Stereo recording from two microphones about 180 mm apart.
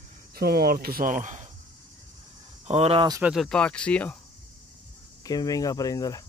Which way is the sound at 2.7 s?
35° right (ahead or behind).